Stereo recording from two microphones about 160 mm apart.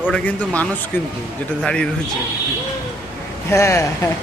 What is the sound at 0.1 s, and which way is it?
Speech, 10° left (ahead or behind).